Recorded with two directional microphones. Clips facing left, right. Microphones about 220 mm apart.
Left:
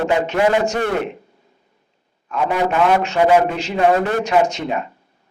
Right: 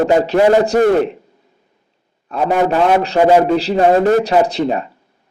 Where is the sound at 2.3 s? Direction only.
35° right (ahead or behind).